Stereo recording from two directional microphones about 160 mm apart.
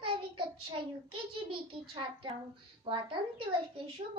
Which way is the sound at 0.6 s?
35° right (ahead or behind).